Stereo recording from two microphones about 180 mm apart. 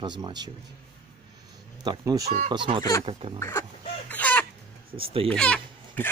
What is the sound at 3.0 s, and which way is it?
Speech, 30° right (ahead or behind).